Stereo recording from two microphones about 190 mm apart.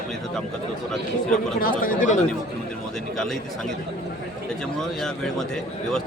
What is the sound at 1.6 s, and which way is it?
Speech, 45° left (ahead or behind).